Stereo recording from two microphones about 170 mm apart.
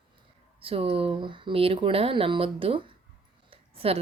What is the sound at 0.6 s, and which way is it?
A woman's voice, 35° right (ahead or behind).